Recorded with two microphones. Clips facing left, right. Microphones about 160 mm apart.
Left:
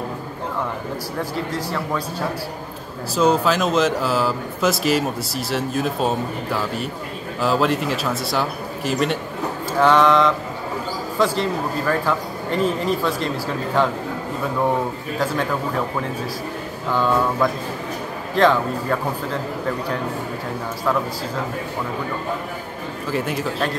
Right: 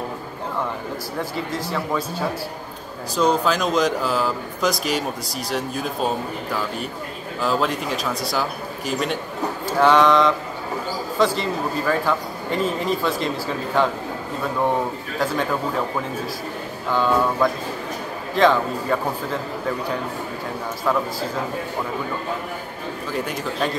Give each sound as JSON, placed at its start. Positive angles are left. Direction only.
{"t": 3.2, "sound": "speech", "side_deg": 5}
{"t": 16.9, "sound": "speech", "side_deg": 0}
{"t": 23.1, "sound": "speech", "side_deg": 5}